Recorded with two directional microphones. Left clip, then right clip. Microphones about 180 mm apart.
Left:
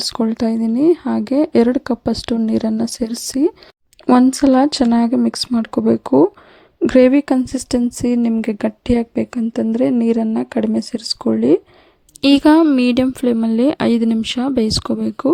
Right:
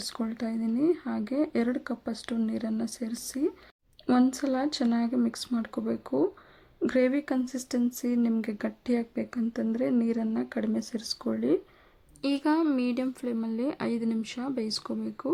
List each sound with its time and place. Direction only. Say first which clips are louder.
0.0 s speech: left 15 dB; 40° left (ahead or behind)